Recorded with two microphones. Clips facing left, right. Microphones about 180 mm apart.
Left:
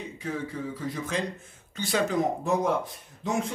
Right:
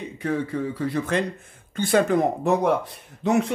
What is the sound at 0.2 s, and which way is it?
Speech, 65° right (ahead or behind).